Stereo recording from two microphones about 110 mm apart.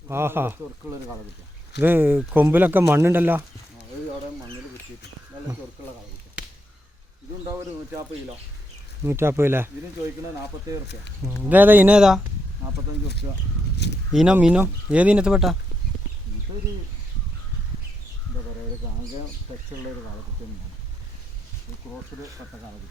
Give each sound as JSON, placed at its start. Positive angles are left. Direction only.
{"t": 0.1, "sound": "speech", "side_deg": -20}
{"t": 9.0, "sound": "speech", "side_deg": -20}
{"t": 11.4, "sound": "speech", "side_deg": -15}
{"t": 14.1, "sound": "speech", "side_deg": -5}